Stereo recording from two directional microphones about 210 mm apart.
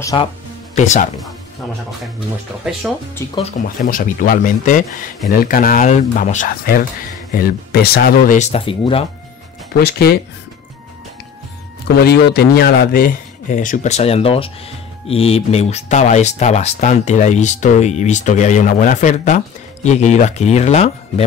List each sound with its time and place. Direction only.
0.0 s speech: 20° left (ahead or behind)
2.1 s speech: 5° right (ahead or behind)
3.2 s speech: 15° left (ahead or behind)
3.6 s speech: 40° left (ahead or behind); by 9.0 s 25° left (ahead or behind)
9.8 s speech: 50° left (ahead or behind)
12.0 s speech: 50° left (ahead or behind); by 21.3 s 30° left (ahead or behind)